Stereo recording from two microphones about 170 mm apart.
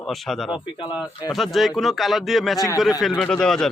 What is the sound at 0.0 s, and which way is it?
Speech, centre (ahead or behind).